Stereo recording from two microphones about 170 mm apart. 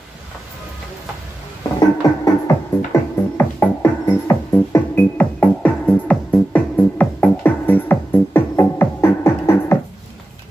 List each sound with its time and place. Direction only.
1.8 s music: 20° left (ahead or behind)